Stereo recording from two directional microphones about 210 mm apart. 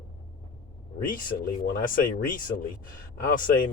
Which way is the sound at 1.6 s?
40° left (ahead or behind).